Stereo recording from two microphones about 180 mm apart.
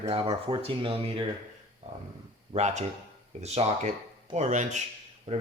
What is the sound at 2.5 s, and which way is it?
Speech, 40° right (ahead or behind).